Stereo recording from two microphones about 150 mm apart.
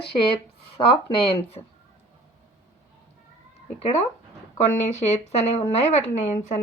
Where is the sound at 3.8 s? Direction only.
45° left (ahead or behind).